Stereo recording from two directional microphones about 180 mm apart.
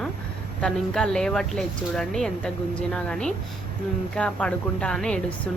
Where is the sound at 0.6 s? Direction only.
5° left (ahead or behind).